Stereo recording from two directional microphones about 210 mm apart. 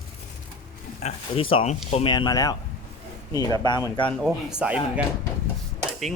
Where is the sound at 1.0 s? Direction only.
25° left (ahead or behind).